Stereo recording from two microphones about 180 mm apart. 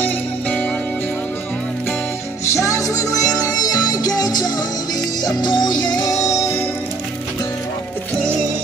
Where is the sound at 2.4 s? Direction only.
15° left (ahead or behind).